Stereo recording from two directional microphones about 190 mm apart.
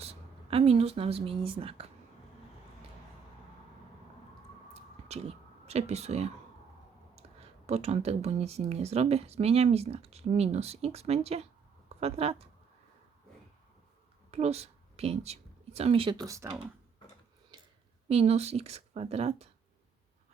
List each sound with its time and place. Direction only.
0.0 s speech: 30° right (ahead or behind)
4.7 s a sound: 35° right (ahead or behind)
7.2 s speech: 35° right (ahead or behind)
14.3 s speech: 35° right (ahead or behind); by 16.6 s 15° right (ahead or behind)
17.5 s a sound: 20° right (ahead or behind)
18.1 s speech: 35° right (ahead or behind)